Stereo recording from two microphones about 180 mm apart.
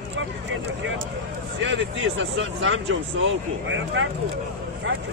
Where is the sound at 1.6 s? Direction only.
90° right.